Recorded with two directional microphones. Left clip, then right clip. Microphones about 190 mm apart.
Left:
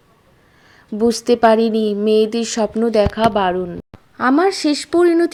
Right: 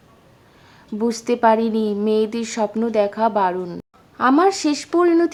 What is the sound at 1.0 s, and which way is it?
Speech, 20° left (ahead or behind).